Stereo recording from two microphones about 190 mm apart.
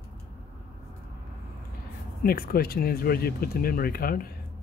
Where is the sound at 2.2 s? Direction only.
55° left (ahead or behind).